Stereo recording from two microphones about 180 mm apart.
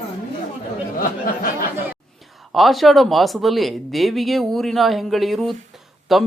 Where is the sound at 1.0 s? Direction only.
55° left (ahead or behind).